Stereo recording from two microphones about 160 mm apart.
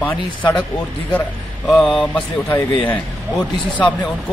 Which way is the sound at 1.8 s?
5° left (ahead or behind).